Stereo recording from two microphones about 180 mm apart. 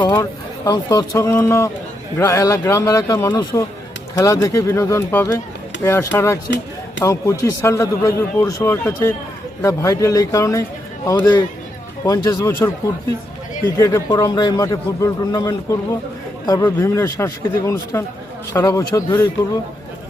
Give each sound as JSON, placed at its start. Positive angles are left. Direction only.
{"t": 0.0, "sound": "a man's voice", "side_deg": 20}
{"t": 13.7, "sound": "a man's voice", "side_deg": 20}